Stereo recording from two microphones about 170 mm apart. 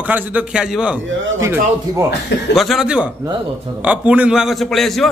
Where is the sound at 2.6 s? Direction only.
Centre (ahead or behind).